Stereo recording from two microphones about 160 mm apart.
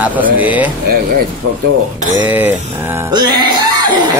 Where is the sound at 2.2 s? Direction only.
10° right (ahead or behind).